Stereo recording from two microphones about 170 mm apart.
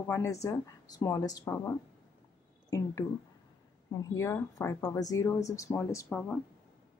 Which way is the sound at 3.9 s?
20° left (ahead or behind).